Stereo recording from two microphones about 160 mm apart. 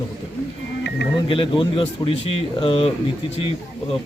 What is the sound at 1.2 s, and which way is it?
Speech, 30° left (ahead or behind).